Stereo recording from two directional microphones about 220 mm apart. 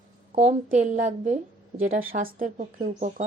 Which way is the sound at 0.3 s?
30° right (ahead or behind).